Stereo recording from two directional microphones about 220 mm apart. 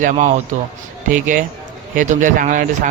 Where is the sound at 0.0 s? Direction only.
35° right (ahead or behind).